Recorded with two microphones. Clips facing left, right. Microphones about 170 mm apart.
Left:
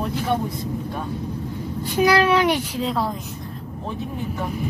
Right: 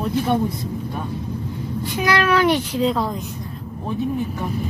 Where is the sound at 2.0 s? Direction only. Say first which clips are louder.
Left 1 dB; 30° left (ahead or behind).